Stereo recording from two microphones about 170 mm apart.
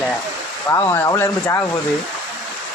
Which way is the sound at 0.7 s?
15° left (ahead or behind).